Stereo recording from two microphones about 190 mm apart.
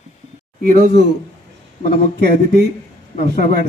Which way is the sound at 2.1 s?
60° right (ahead or behind).